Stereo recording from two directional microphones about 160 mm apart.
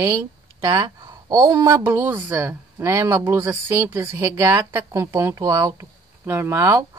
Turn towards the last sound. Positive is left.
turn(degrees=-20)  # may be behind; listen again after turning